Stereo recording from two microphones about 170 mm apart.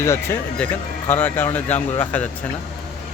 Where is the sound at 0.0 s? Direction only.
15° left (ahead or behind).